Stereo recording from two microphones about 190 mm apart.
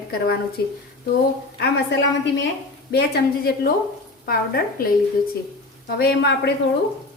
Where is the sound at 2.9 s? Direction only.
55° left (ahead or behind).